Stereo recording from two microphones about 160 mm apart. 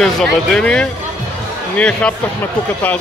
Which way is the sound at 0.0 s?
5° left (ahead or behind).